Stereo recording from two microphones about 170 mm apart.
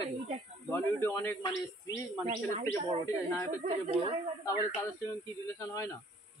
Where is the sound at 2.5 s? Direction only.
40° right (ahead or behind).